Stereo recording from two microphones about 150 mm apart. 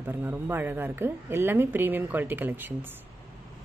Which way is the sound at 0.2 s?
15° right (ahead or behind).